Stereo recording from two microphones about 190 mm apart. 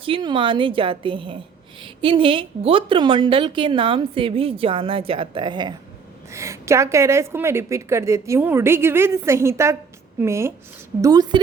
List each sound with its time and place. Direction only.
0.0 s a woman's voice: 25° right (ahead or behind)